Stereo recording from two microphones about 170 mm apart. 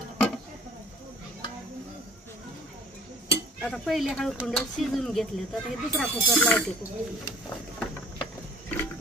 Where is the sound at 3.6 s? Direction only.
Centre (ahead or behind).